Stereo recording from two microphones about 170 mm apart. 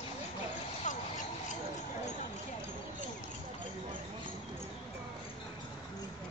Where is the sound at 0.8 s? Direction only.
50° left (ahead or behind).